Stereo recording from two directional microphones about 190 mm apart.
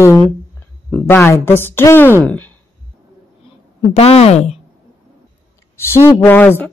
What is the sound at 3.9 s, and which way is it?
Speech, 30° left (ahead or behind).